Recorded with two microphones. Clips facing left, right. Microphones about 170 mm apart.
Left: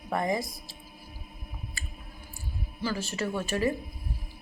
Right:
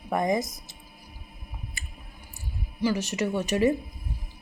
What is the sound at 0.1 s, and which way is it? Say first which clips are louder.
Speech: right 3 dB; 20° right (ahead or behind).